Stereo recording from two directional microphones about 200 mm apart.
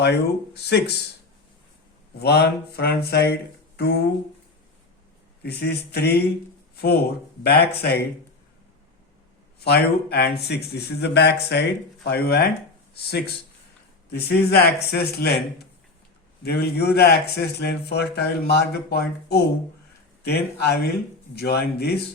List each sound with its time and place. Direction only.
0.5 s speech: 55° left (ahead or behind)
2.1 s speech: 55° left (ahead or behind)
5.4 s speech: 55° left (ahead or behind)
9.6 s speech: 55° left (ahead or behind)
16.4 s speech: 55° left (ahead or behind)